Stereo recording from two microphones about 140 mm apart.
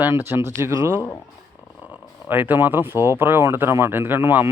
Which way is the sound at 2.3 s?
15° right (ahead or behind).